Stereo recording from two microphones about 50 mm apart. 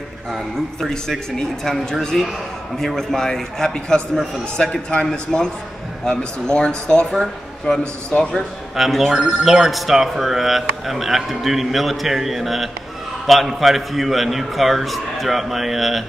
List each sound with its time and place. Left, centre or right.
0.7 s a man's voice: centre
7.2 s speech: centre
7.8 s a man's voice: centre
8.7 s speech: centre
9.1 s speech: centre